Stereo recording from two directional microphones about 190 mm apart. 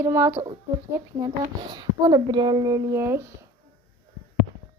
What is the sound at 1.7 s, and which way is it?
Speech, 20° right (ahead or behind).